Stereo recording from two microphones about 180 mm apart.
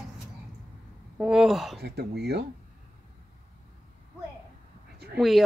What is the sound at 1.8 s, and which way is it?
Speech, 65° right (ahead or behind).